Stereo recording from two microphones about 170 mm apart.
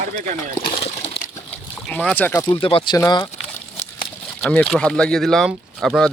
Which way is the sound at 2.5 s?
35° left (ahead or behind).